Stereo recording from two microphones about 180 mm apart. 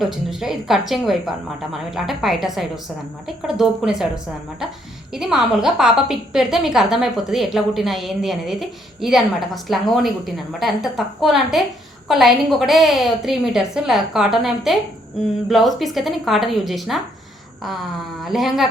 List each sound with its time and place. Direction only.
0.0 s a woman's voice: centre (ahead or behind)